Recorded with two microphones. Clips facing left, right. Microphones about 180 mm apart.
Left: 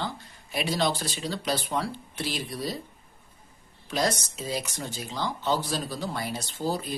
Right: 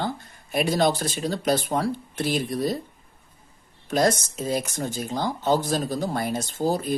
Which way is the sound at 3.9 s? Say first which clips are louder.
Right 6 dB; 50° right (ahead or behind).